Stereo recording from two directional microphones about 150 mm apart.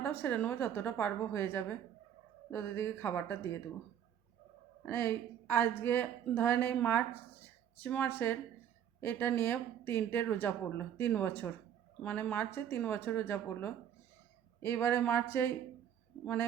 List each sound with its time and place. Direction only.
0.0 s speech: 15° left (ahead or behind)
4.9 s speech: 15° left (ahead or behind)